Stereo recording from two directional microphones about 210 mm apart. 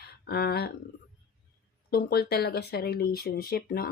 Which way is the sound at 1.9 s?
50° left (ahead or behind).